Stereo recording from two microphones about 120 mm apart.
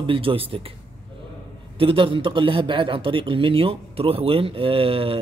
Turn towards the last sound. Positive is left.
turn(degrees=-50)  # may be behind; listen again after turning